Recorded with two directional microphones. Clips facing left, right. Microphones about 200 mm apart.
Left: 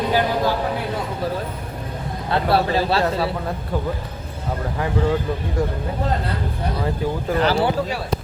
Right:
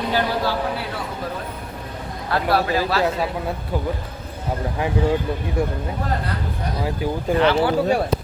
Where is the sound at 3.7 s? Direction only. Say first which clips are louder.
Left 1 dB; 10° right (ahead or behind).